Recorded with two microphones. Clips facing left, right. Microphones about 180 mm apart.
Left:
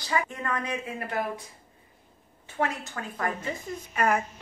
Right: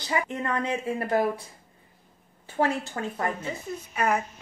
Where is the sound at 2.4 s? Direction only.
30° right (ahead or behind).